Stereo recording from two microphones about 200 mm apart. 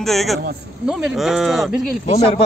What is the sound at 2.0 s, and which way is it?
Speech, 35° left (ahead or behind).